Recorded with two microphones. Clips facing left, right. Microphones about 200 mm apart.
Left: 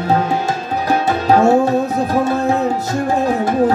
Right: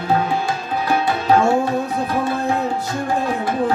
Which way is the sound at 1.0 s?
40° left (ahead or behind).